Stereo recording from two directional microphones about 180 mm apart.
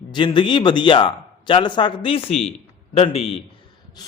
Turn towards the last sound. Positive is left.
turn(degrees=35)  # may be behind; listen again after turning